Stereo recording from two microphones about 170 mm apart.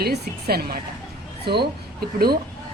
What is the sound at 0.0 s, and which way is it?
A woman's voice, 65° right (ahead or behind).